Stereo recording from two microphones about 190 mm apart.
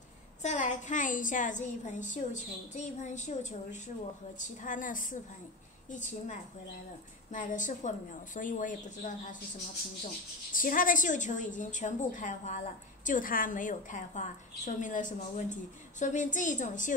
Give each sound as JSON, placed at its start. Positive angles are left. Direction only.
{"t": 0.4, "sound": "a woman's voice", "side_deg": 40}
{"t": 4.4, "sound": "a woman's voice", "side_deg": 45}
{"t": 7.3, "sound": "a woman's voice", "side_deg": 45}
{"t": 10.5, "sound": "a woman's voice", "side_deg": 45}